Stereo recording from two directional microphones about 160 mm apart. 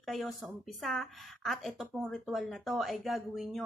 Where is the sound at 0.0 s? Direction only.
Centre (ahead or behind).